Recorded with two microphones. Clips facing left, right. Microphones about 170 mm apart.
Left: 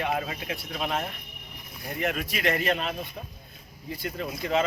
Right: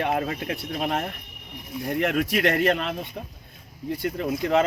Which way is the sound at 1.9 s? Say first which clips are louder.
Right 6 dB; 70° right (ahead or behind).